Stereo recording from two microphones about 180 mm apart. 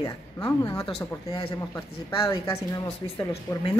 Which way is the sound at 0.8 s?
30° left (ahead or behind).